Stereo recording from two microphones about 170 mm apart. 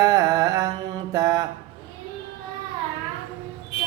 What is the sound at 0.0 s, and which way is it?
Mantra, 20° right (ahead or behind).